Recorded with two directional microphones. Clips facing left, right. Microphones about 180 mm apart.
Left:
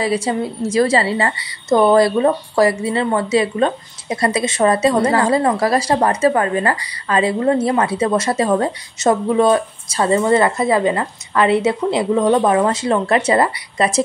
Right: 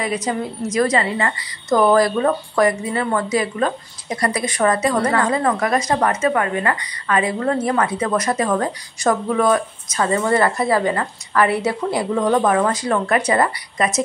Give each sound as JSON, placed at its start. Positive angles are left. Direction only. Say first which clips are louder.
{"t": 0.0, "sound": "a woman's voice", "louder": "left 4 dB", "side_deg": 30}